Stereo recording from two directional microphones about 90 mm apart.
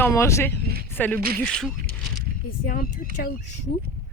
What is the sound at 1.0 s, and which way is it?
Speech, 15° left (ahead or behind).